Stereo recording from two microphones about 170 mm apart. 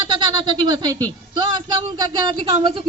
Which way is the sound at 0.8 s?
25° right (ahead or behind).